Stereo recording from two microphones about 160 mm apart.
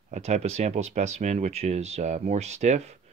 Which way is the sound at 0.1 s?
45° right (ahead or behind).